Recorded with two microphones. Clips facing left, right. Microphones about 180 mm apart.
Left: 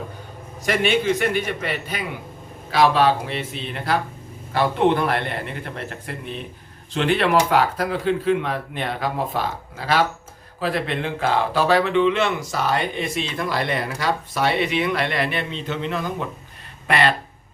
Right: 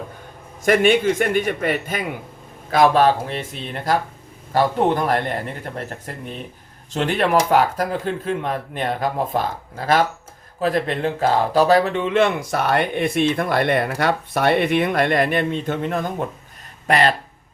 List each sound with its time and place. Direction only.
0.6 s a man's voice: 45° right (ahead or behind)